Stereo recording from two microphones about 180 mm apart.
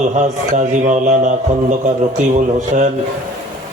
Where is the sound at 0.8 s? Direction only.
45° right (ahead or behind).